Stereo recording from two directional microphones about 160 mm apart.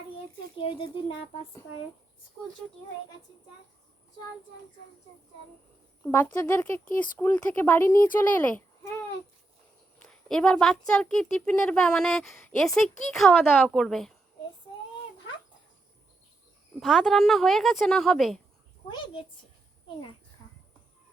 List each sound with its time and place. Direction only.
0.6 s speech: 35° left (ahead or behind)
6.0 s speech: 15° left (ahead or behind)
10.0 s speech: 5° left (ahead or behind)
16.8 s speech: centre (ahead or behind)
18.9 s speech: 30° left (ahead or behind)